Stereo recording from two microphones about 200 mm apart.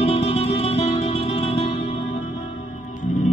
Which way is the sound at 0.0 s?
30° left (ahead or behind).